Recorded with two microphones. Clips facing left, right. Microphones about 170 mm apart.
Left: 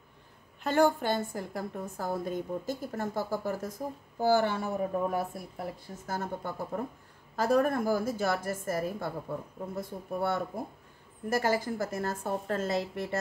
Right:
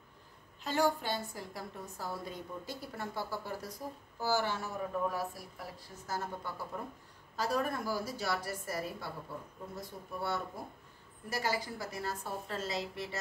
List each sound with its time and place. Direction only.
0.7 s a woman's voice: 55° left (ahead or behind)